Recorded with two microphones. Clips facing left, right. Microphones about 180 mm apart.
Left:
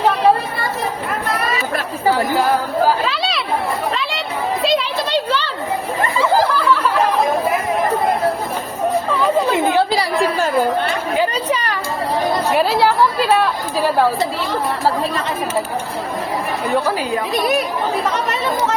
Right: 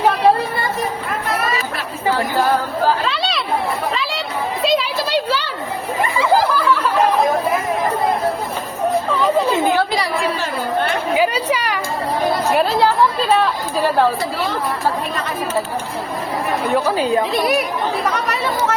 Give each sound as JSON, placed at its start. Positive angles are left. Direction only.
{"t": 2.1, "sound": "speech", "side_deg": 10}
{"t": 3.0, "sound": "chatter", "side_deg": 0}
{"t": 4.6, "sound": "a sound", "side_deg": -5}
{"t": 6.0, "sound": "chatter", "side_deg": -10}
{"t": 8.9, "sound": "a sound", "side_deg": 0}
{"t": 9.7, "sound": "chatter", "side_deg": 30}
{"t": 11.2, "sound": "chatter", "side_deg": -10}
{"t": 13.3, "sound": "chatter", "side_deg": 5}